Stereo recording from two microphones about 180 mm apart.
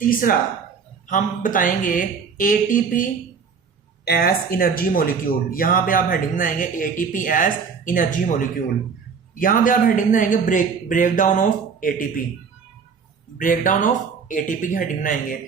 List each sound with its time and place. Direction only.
0.0 s speech: 50° left (ahead or behind)
4.0 s speech: 60° left (ahead or behind)
13.4 s speech: 45° left (ahead or behind)